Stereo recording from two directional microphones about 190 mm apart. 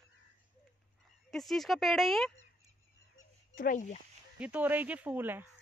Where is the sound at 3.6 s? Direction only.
45° left (ahead or behind).